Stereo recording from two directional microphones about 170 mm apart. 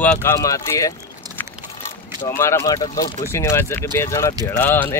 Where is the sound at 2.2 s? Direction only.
15° left (ahead or behind).